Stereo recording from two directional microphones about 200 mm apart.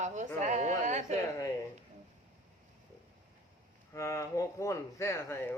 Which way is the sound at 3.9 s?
15° left (ahead or behind).